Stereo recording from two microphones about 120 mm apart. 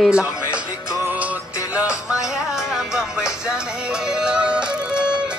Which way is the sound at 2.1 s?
5° right (ahead or behind).